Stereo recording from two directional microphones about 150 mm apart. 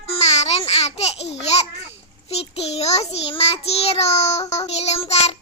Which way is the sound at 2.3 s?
45° left (ahead or behind).